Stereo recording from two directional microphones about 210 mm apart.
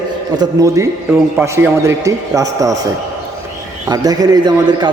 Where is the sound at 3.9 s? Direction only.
15° right (ahead or behind).